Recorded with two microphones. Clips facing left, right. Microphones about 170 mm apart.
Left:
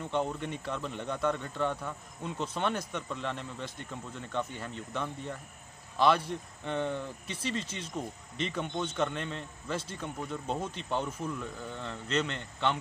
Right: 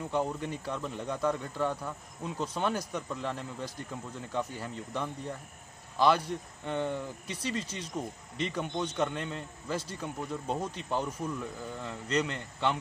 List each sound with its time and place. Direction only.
0.0 s speech: 5° right (ahead or behind)
7.2 s speech: 30° left (ahead or behind)
7.9 s speech: 5° right (ahead or behind)